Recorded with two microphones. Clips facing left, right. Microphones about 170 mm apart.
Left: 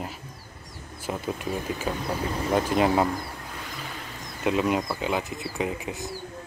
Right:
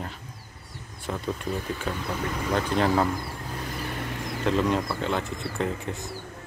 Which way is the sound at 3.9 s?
70° right (ahead or behind).